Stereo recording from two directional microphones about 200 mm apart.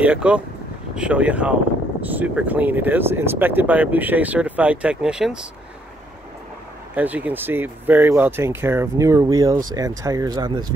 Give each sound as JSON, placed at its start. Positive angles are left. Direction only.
{"t": 0.0, "sound": "speech", "side_deg": -5}
{"t": 7.0, "sound": "speech", "side_deg": -10}